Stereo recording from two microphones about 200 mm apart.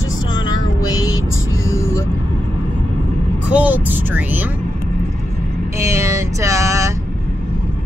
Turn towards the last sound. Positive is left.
turn(degrees=-15)  # may be behind; listen again after turning